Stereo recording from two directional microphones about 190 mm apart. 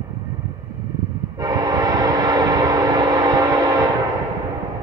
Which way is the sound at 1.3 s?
20° right (ahead or behind).